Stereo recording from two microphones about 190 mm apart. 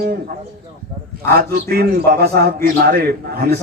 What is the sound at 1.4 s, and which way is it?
A man's voice, 50° right (ahead or behind).